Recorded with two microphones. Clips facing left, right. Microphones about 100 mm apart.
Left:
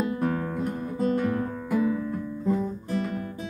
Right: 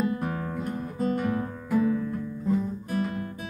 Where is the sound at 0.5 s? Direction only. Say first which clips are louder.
Left 2 dB; centre (ahead or behind).